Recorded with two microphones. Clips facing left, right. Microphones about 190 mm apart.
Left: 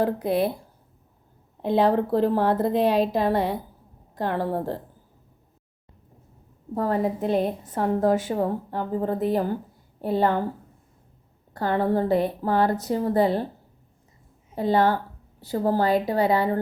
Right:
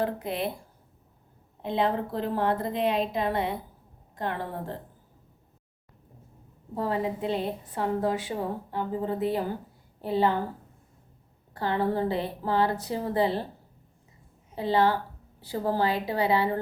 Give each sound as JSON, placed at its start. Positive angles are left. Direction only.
{"t": 0.0, "sound": "speech", "side_deg": 40}
{"t": 1.7, "sound": "speech", "side_deg": 40}
{"t": 6.7, "sound": "a woman's voice", "side_deg": 50}
{"t": 11.5, "sound": "a woman's voice", "side_deg": 45}
{"t": 14.5, "sound": "a woman's voice", "side_deg": 45}